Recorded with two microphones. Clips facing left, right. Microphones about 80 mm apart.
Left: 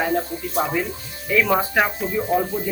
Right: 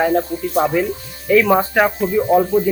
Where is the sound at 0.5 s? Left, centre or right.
Centre.